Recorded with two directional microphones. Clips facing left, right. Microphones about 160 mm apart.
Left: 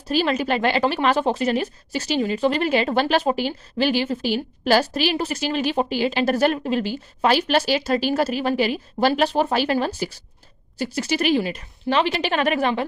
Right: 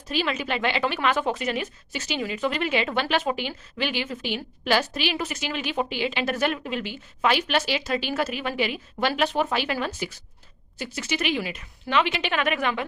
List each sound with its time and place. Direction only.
0.1 s speech: 40° left (ahead or behind)